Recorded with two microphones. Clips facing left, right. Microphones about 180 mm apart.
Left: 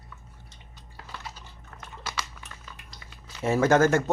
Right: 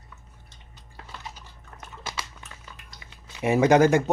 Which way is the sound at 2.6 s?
15° right (ahead or behind).